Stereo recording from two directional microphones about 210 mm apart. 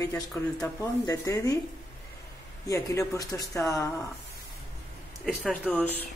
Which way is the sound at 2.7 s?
15° left (ahead or behind).